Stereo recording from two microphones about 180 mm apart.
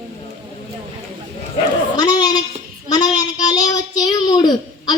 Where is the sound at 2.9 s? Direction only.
20° left (ahead or behind).